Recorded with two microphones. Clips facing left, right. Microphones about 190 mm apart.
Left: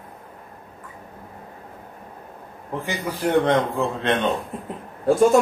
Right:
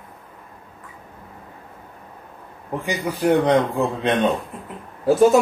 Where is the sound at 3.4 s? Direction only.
15° right (ahead or behind).